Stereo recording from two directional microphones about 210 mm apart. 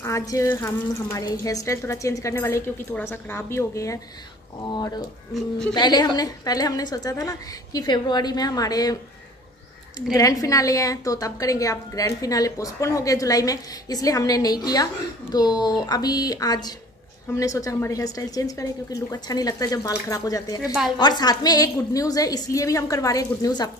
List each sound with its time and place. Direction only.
0.0 s a woman's voice: 15° left (ahead or behind)
5.3 s speech: 5° left (ahead or behind)
5.8 s a woman's voice: 20° left (ahead or behind)
10.1 s a woman's voice: 15° left (ahead or behind)
20.6 s speech: 5° right (ahead or behind)
21.0 s a woman's voice: 20° left (ahead or behind)